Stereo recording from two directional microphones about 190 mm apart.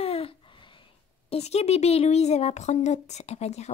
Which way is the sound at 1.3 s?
35° left (ahead or behind).